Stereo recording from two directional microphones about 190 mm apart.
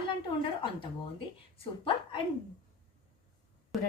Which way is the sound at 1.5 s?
30° left (ahead or behind).